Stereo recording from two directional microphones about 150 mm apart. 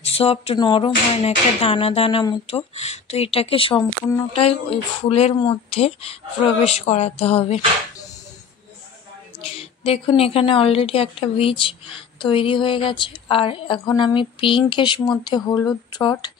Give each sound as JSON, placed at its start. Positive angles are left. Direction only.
{"t": 0.0, "sound": "a woman's voice", "side_deg": 40}
{"t": 1.1, "sound": "a woman's voice", "side_deg": 45}
{"t": 9.4, "sound": "a woman's voice", "side_deg": 40}